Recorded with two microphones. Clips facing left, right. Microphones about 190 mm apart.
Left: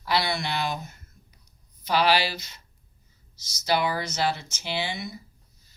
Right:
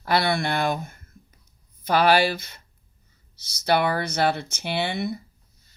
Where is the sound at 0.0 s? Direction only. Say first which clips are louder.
Right 4 dB; 55° right (ahead or behind).